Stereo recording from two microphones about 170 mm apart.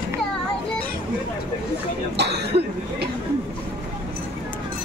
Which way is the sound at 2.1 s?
80° right.